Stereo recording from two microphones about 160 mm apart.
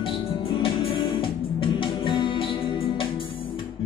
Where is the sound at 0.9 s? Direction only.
30° left (ahead or behind).